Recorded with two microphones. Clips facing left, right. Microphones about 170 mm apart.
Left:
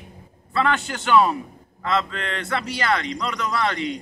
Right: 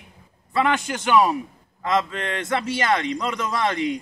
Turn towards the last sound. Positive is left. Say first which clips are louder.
# right 1 dB
turn(degrees=-15)  # may be behind; listen again after turning